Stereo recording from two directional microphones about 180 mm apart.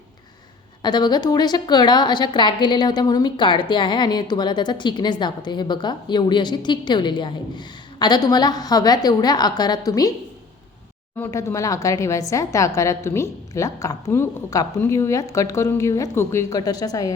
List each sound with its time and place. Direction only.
0.8 s a woman's voice: 25° left (ahead or behind)
11.2 s a woman's voice: 15° left (ahead or behind)